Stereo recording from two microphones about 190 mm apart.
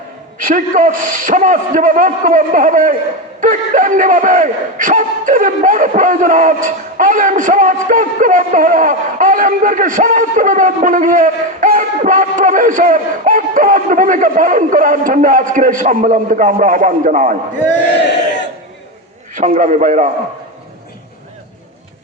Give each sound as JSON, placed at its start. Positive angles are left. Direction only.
{"t": 0.3, "sound": "speech", "side_deg": -45}
{"t": 19.3, "sound": "a man's voice", "side_deg": -45}